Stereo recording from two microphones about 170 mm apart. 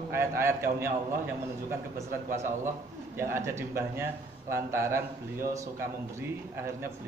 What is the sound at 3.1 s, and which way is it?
A man's voice, 15° right (ahead or behind).